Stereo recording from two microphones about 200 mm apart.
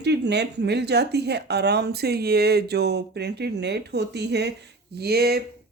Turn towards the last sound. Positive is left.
turn(degrees=-50)  # may be behind; listen again after turning